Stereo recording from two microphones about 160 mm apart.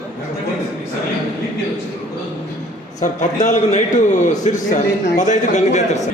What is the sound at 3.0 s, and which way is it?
A man's voice, 50° left (ahead or behind).